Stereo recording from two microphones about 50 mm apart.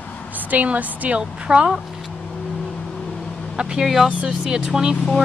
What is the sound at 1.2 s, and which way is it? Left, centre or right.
Speech, centre.